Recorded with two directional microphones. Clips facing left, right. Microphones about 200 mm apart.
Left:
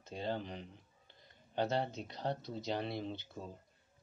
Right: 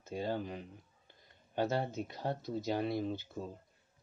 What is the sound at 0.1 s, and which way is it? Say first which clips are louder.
Speech: right 3 dB; 10° right (ahead or behind).